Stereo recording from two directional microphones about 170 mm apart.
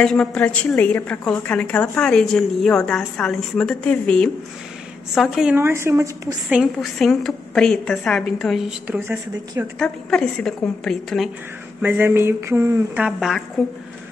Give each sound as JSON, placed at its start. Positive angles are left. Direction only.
{"t": 0.0, "sound": "a woman's voice", "side_deg": 5}
{"t": 5.6, "sound": "mantra", "side_deg": -15}
{"t": 6.5, "sound": "a woman's voice", "side_deg": 0}
{"t": 9.8, "sound": "a woman's voice", "side_deg": 5}
{"t": 11.8, "sound": "mantra", "side_deg": -10}